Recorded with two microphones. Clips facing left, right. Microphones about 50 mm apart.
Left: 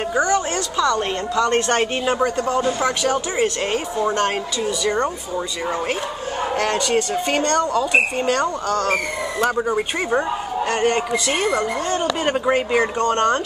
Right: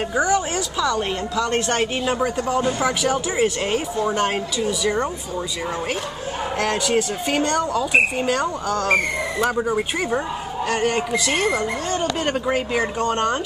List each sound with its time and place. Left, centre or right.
0.1 s a woman's voice: centre
6.6 s a woman's voice: centre